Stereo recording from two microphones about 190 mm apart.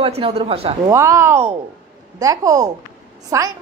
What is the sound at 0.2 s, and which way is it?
Speech, 30° right (ahead or behind).